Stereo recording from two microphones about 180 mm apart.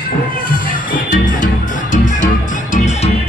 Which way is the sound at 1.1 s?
45° left (ahead or behind).